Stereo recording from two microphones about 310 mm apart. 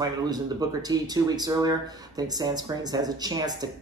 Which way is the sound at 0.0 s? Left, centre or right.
Centre.